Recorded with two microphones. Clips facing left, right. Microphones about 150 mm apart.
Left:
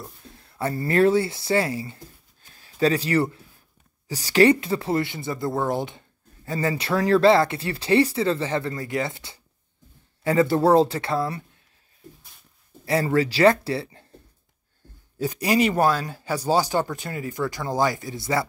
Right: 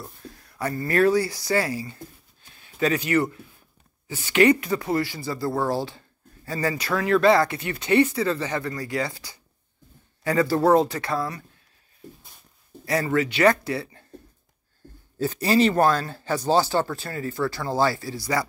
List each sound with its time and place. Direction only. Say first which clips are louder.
0.3 s speech: left 2 dB; 25° left (ahead or behind)
12.8 s speech: left 2 dB; 30° left (ahead or behind)
15.1 s speech: right 1 dB; 15° left (ahead or behind)